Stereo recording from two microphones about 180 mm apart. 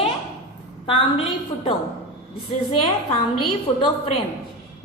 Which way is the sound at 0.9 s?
30° left (ahead or behind).